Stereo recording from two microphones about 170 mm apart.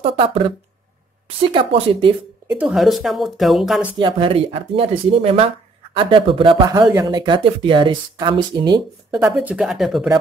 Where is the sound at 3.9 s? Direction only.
30° right (ahead or behind).